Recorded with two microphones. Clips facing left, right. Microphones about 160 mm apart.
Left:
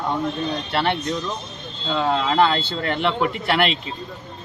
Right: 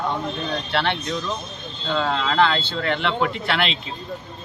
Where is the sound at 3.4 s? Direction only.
45° left (ahead or behind).